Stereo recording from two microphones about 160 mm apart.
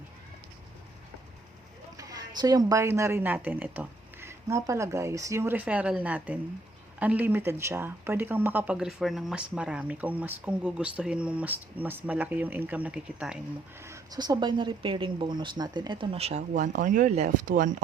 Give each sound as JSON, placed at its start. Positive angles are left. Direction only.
{"t": 2.0, "sound": "a woman's voice", "side_deg": -20}
{"t": 13.8, "sound": "speech", "side_deg": -20}